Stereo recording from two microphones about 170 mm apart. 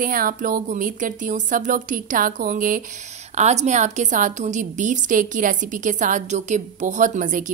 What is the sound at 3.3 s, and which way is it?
A woman's voice, 40° right (ahead or behind).